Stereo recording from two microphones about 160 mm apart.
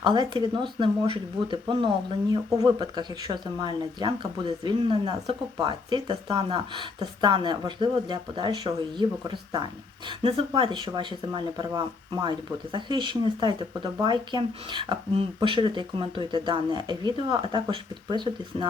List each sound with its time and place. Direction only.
0.0 s speech: 30° right (ahead or behind)